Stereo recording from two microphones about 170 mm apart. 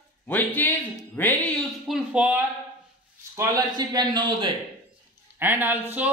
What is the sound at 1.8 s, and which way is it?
Speech, 5° right (ahead or behind).